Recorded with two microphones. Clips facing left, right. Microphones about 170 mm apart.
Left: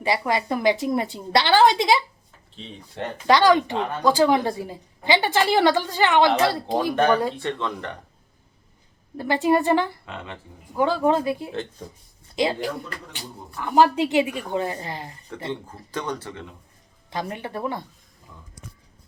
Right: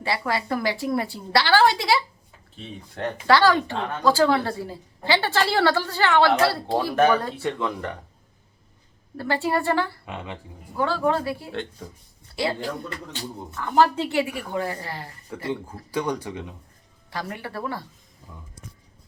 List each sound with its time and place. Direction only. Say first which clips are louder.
0.0 s a woman's voice: left 3 dB; 15° left (ahead or behind)
3.2 s a woman's voice: left 2 dB; 15° left (ahead or behind)
6.9 s speech: right 1 dB; 5° right (ahead or behind)
9.1 s a woman's voice: left 4 dB; 15° left (ahead or behind)
10.1 s speech: right 2 dB; 15° right (ahead or behind)
10.8 s a woman's voice: left 3 dB; 15° left (ahead or behind)
15.7 s speech: right 3 dB; 10° right (ahead or behind)
17.1 s a woman's voice: left 3 dB; 20° left (ahead or behind)